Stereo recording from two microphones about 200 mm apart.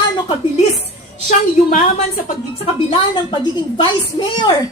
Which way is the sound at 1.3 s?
40° left (ahead or behind).